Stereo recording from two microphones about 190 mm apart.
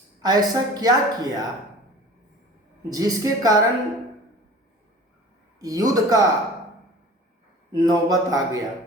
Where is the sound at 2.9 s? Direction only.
20° right (ahead or behind).